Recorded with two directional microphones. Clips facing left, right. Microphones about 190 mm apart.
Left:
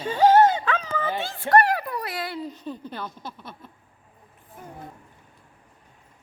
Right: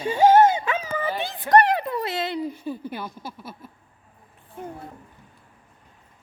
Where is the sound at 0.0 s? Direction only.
10° right (ahead or behind).